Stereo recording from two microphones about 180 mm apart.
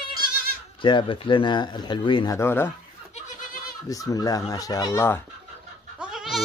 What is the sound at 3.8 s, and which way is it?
Speech, 20° left (ahead or behind).